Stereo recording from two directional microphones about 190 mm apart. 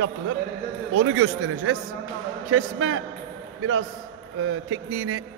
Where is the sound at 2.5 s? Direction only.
90° right.